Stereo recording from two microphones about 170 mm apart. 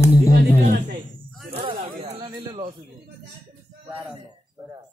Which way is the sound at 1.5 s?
35° right (ahead or behind).